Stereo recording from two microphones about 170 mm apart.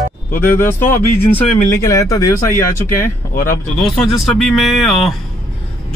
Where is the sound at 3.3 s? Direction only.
50° left (ahead or behind).